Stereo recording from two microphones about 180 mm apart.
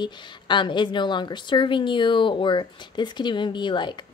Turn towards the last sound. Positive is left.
turn(degrees=25)  # may be behind; listen again after turning